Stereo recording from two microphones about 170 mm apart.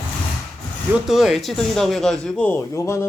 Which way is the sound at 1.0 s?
5° right (ahead or behind).